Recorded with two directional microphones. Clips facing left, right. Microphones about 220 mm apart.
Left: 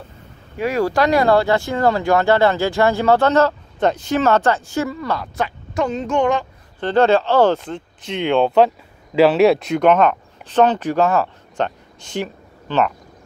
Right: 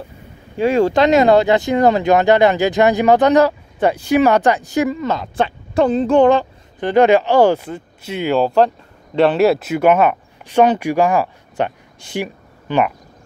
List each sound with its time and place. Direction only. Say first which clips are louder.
0.6 s speech: right 4 dB; 25° right (ahead or behind)
6.8 s speech: right 3 dB; 15° right (ahead or behind)